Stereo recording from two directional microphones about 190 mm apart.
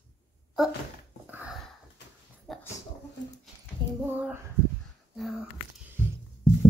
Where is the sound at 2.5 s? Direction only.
Centre (ahead or behind).